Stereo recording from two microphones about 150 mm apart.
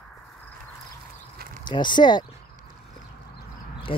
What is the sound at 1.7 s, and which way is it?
Speech, 30° left (ahead or behind).